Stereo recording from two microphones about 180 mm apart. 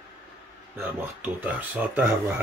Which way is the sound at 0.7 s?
10° right (ahead or behind).